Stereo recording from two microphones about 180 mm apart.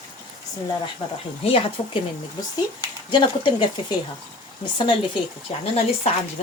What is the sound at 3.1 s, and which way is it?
Speech, 25° left (ahead or behind).